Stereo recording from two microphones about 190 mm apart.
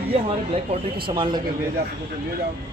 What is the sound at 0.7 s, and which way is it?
Speech, 25° right (ahead or behind).